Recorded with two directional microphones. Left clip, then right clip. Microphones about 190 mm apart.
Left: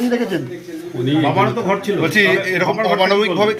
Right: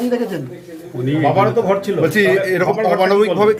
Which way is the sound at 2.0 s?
35° right (ahead or behind).